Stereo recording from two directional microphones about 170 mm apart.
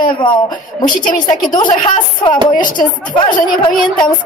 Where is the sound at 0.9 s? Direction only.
55° left (ahead or behind).